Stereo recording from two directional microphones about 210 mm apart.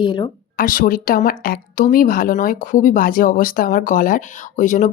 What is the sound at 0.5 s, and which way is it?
Speech, 40° left (ahead or behind).